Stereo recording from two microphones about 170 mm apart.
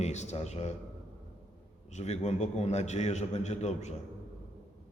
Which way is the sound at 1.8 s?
40° left (ahead or behind).